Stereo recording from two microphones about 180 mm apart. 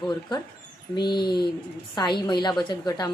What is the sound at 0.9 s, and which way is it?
A woman's voice, 25° left (ahead or behind).